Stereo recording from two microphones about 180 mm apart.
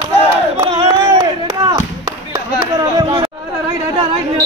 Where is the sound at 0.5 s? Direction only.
25° right (ahead or behind).